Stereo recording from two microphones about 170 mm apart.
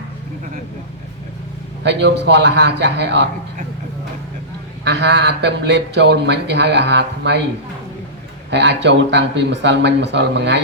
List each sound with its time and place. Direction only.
1.8 s speech: 90° right
4.9 s speech: 90° right
8.4 s speech: 90° right